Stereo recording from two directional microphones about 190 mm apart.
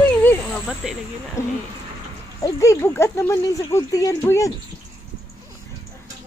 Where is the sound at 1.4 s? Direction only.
15° left (ahead or behind).